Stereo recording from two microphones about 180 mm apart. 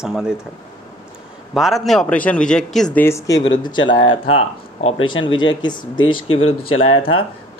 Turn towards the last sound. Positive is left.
turn(degrees=35)  # may be behind; listen again after turning